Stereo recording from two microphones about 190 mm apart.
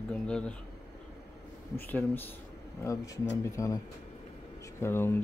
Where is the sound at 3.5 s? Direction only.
15° left (ahead or behind).